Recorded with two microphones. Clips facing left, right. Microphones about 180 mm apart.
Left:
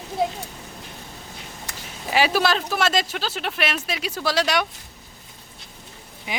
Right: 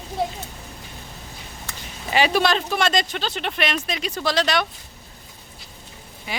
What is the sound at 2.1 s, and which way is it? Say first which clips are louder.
Speech: right 1 dB; 5° left (ahead or behind).